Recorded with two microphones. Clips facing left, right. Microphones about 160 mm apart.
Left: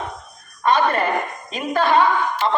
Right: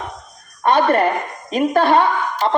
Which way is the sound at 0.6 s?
60° right (ahead or behind).